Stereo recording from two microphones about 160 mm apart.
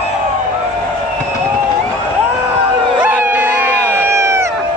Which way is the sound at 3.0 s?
10° right (ahead or behind).